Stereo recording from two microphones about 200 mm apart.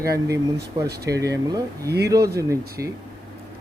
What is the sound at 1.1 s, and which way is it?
Speech, 15° right (ahead or behind).